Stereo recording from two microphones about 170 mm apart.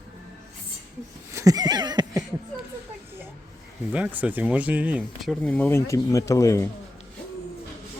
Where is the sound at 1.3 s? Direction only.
20° right (ahead or behind).